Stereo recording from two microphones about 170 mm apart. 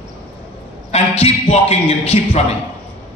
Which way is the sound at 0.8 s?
35° left (ahead or behind).